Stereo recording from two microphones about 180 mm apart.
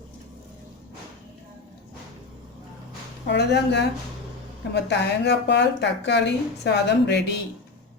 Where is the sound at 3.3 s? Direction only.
70° left (ahead or behind).